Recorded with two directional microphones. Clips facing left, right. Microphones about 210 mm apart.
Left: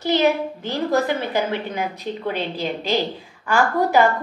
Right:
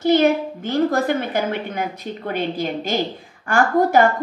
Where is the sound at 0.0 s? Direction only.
50° right (ahead or behind).